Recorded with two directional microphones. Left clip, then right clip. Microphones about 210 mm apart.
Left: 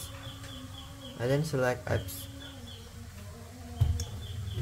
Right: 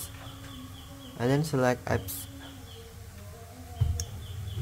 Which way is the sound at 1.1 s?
25° right (ahead or behind).